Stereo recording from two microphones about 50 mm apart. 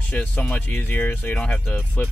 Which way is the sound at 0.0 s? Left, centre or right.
Left.